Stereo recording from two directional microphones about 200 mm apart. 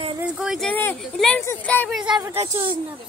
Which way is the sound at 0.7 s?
10° left (ahead or behind).